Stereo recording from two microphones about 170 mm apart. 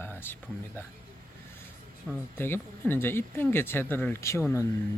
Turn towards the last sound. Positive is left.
turn(degrees=15)  # may be behind; listen again after turning